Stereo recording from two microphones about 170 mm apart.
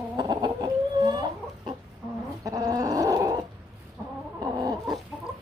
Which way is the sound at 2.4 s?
20° right (ahead or behind).